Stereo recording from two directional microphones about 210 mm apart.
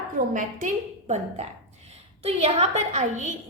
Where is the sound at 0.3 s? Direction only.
35° right (ahead or behind).